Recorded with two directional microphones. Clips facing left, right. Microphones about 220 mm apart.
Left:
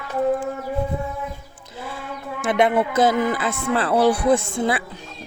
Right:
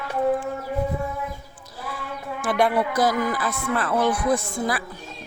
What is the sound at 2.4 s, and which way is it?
Speech, 20° left (ahead or behind).